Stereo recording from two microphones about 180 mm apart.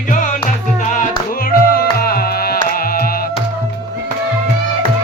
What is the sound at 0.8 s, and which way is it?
Music, 45° left (ahead or behind).